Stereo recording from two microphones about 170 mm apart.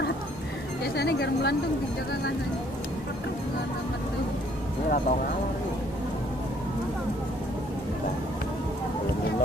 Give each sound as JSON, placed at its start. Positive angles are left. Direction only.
{"t": 0.9, "sound": "speech", "side_deg": 75}